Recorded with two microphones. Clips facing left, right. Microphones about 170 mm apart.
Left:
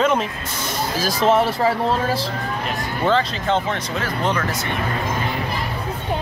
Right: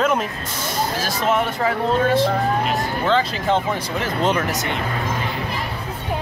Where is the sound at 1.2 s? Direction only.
35° left (ahead or behind).